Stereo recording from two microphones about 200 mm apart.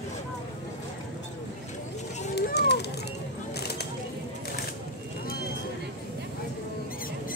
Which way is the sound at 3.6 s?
55° left (ahead or behind).